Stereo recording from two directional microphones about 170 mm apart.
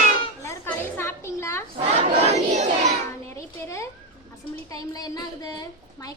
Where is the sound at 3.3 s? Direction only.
20° left (ahead or behind).